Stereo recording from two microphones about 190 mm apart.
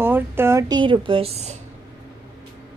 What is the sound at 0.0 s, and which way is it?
A woman's voice, 10° right (ahead or behind).